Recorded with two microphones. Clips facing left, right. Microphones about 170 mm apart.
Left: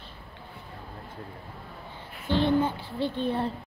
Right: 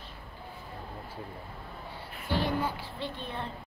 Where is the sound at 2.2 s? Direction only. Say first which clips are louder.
Left 6 dB; 25° left (ahead or behind).